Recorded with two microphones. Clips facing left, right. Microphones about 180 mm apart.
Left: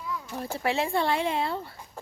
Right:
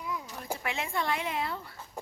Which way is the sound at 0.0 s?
15° right (ahead or behind).